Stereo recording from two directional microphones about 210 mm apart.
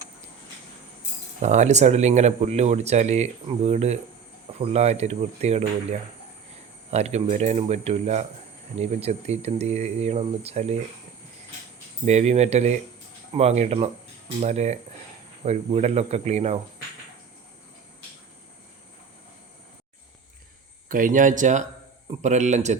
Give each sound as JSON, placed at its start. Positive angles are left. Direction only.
{"t": 1.4, "sound": "speech", "side_deg": -35}
{"t": 6.9, "sound": "speech", "side_deg": -30}
{"t": 12.0, "sound": "speech", "side_deg": -30}
{"t": 20.8, "sound": "speech", "side_deg": -40}